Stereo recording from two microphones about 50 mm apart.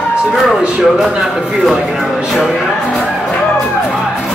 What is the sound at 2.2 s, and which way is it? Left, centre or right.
Music, centre.